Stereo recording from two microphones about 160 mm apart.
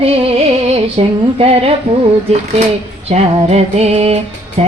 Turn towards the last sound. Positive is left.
turn(degrees=-40)  # may be behind; listen again after turning